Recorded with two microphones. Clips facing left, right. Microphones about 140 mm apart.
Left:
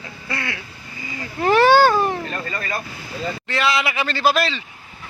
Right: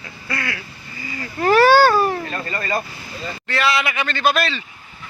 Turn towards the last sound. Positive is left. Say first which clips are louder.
# even
turn(degrees=25)  # may be behind; listen again after turning